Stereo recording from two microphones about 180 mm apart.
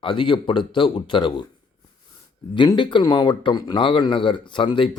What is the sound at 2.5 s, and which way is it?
Speech, 25° left (ahead or behind).